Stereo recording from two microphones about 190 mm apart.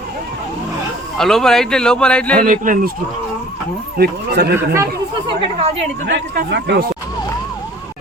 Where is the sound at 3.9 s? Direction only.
55° right (ahead or behind).